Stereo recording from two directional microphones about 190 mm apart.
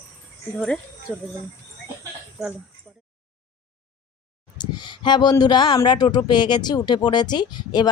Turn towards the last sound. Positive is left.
turn(degrees=25)  # may be behind; listen again after turning